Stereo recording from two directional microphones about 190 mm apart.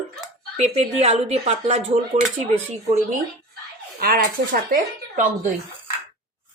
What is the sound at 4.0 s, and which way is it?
Speech, 50° right (ahead or behind).